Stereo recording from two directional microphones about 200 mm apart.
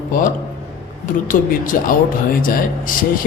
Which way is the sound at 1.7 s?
45° left (ahead or behind).